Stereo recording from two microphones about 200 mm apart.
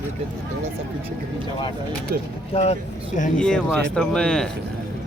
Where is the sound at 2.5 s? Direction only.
30° left (ahead or behind).